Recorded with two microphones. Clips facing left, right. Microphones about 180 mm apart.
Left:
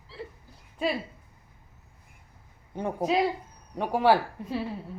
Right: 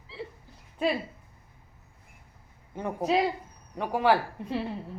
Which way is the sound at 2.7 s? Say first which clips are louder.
Left 2 dB; 20° left (ahead or behind).